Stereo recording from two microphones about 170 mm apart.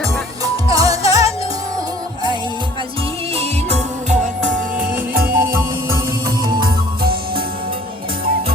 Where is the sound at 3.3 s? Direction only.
40° right (ahead or behind); by 5.4 s 55° right (ahead or behind).